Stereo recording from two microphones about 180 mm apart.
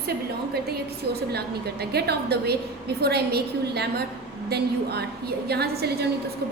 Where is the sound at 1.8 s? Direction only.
60° right (ahead or behind).